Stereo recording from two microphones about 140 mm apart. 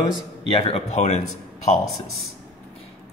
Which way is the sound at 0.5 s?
50° left (ahead or behind).